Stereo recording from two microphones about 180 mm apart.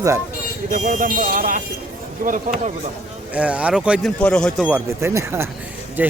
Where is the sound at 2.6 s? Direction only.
35° right (ahead or behind).